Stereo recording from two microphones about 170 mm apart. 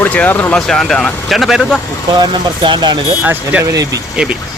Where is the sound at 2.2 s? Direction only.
25° right (ahead or behind).